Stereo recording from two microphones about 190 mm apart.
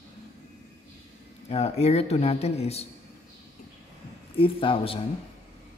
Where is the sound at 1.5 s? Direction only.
35° left (ahead or behind).